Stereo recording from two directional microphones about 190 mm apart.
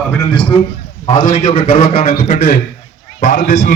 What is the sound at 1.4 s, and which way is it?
A man's voice, 25° left (ahead or behind).